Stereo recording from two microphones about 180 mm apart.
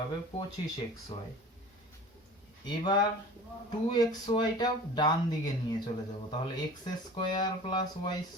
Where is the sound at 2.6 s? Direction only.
25° left (ahead or behind).